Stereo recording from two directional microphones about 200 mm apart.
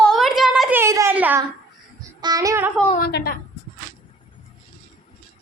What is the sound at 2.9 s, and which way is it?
Speech, 50° left (ahead or behind).